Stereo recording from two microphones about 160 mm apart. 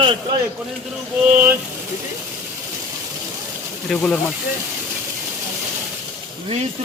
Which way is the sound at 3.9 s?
5° left (ahead or behind).